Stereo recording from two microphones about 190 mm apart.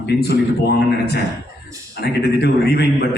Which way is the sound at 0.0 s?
60° left (ahead or behind).